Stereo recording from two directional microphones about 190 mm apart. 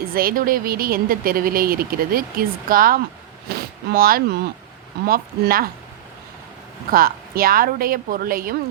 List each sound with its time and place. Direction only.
0.0 s a woman's voice: 50° right (ahead or behind)
6.9 s a woman's voice: 50° right (ahead or behind)